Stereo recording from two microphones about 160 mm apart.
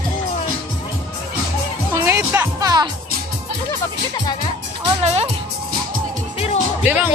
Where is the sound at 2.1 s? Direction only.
20° right (ahead or behind).